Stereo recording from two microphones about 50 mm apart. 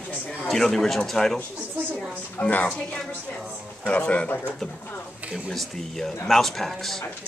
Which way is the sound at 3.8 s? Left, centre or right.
Left.